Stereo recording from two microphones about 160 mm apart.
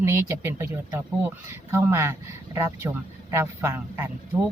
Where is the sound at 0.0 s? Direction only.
15° right (ahead or behind).